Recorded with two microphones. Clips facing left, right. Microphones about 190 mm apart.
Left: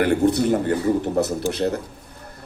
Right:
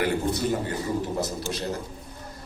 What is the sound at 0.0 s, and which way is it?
Speech, 65° left (ahead or behind).